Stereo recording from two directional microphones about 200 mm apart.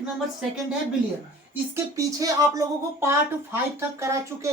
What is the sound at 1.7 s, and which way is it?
Speech, 15° right (ahead or behind).